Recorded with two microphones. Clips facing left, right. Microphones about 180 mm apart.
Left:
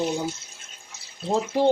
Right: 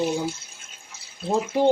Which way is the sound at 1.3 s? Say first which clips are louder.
Right 1 dB; 15° right (ahead or behind).